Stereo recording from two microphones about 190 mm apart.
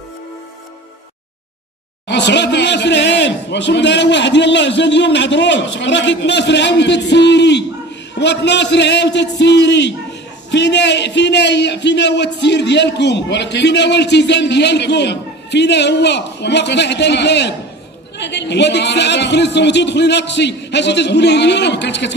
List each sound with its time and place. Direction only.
2.0 s a man's voice: 65° left (ahead or behind)